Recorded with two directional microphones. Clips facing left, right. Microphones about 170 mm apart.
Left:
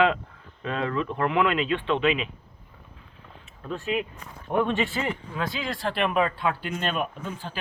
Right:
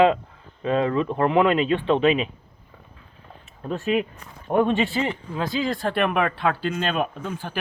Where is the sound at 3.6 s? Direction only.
55° right (ahead or behind).